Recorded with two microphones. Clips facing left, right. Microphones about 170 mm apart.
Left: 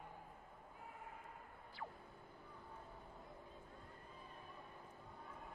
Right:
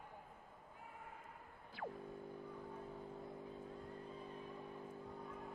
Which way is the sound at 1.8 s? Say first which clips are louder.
Right 5 dB; 70° right (ahead or behind).